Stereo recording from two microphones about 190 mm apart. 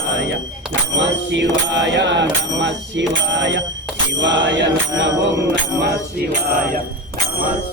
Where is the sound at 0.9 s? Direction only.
70° right (ahead or behind).